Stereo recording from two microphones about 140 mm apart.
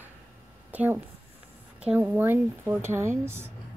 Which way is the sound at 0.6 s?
10° right (ahead or behind).